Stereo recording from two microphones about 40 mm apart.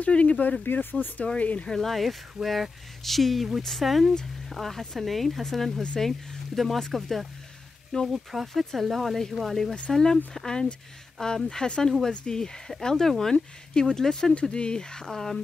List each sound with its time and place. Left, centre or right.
0.0 s speech: left
0.7 s speech: left
1.7 s speech: centre